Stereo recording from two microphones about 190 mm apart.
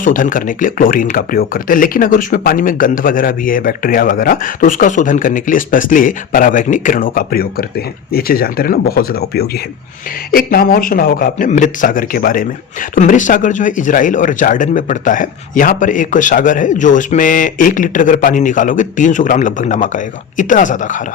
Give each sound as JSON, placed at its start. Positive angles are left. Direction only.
{"t": 0.0, "sound": "speech", "side_deg": 45}